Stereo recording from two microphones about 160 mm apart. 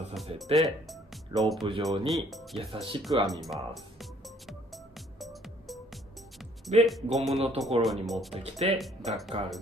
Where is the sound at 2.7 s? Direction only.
35° right (ahead or behind).